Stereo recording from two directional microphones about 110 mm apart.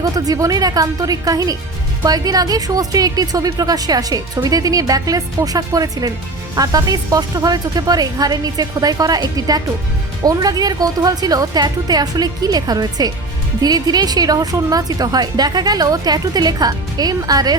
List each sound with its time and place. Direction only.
0.0 s a woman's voice: 30° right (ahead or behind)